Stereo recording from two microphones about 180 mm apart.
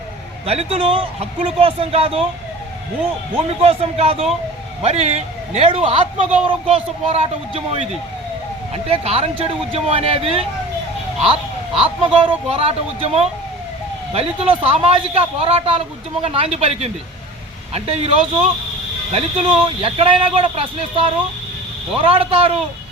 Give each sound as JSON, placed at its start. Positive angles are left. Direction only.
{"t": 0.4, "sound": "a man's voice", "side_deg": -35}
{"t": 3.6, "sound": "a man's voice", "side_deg": -35}
{"t": 11.8, "sound": "a man's voice", "side_deg": -25}